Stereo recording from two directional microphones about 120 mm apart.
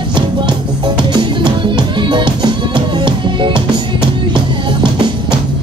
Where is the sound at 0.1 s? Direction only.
40° right (ahead or behind).